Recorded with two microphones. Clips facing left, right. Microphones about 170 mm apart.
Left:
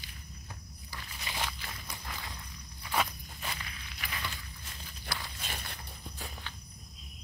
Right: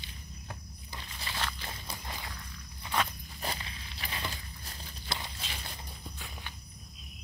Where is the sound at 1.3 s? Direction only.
20° left (ahead or behind).